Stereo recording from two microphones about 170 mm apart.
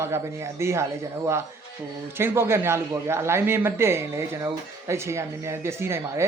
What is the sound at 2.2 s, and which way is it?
A man's voice, 15° right (ahead or behind).